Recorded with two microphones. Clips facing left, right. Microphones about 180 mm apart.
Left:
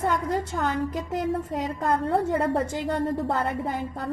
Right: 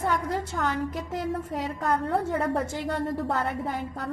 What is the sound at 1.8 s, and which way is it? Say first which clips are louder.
A woman's voice: left 2 dB; 15° left (ahead or behind).